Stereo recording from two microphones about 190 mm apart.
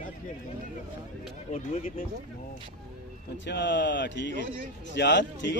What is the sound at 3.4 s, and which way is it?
Speech, 65° left (ahead or behind).